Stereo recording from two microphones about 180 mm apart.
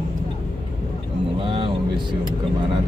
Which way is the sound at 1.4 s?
30° right (ahead or behind).